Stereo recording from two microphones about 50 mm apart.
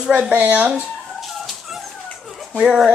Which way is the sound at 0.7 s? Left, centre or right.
Centre.